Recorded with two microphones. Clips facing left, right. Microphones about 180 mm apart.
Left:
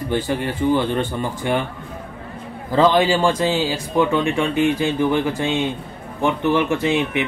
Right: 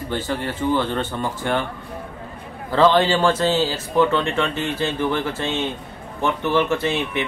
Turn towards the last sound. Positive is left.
turn(degrees=15)  # may be behind; listen again after turning